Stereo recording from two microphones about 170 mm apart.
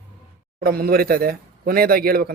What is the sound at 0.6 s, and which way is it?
A man's voice, 60° right (ahead or behind).